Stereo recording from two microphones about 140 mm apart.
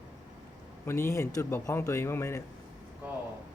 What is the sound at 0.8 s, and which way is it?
A man's voice, 20° left (ahead or behind).